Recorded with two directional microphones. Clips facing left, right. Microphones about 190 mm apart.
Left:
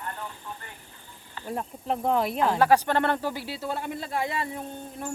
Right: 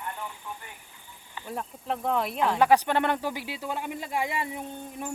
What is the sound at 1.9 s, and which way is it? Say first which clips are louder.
Speech: left 3 dB; centre (ahead or behind).